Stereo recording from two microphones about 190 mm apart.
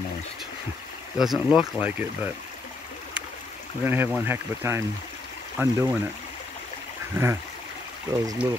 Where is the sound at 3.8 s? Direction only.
10° right (ahead or behind).